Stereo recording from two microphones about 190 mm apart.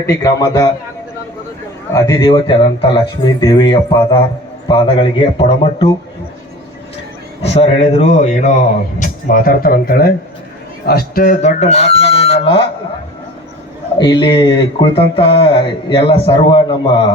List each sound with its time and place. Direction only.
0.0 s speech: 15° left (ahead or behind)
2.0 s speech: 20° left (ahead or behind)
7.4 s a man's voice: 35° left (ahead or behind)
14.0 s speech: 25° left (ahead or behind)